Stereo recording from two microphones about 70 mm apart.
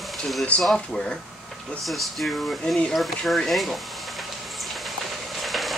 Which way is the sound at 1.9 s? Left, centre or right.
Centre.